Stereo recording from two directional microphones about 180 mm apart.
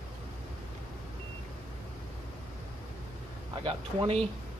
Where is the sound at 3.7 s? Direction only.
30° right (ahead or behind).